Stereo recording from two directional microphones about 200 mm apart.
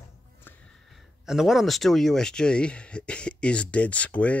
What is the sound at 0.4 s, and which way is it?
Speech, 5° left (ahead or behind).